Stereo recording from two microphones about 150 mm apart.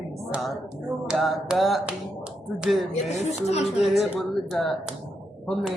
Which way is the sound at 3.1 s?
45° left (ahead or behind).